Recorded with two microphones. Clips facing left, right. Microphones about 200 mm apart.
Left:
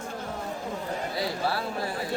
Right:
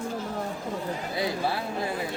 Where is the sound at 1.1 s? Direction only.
20° right (ahead or behind).